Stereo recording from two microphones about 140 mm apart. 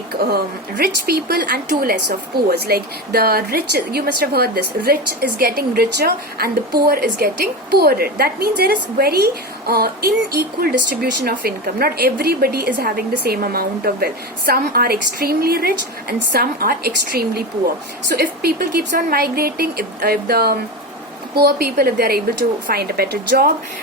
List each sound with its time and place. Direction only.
0.1 s a woman's voice: 90° right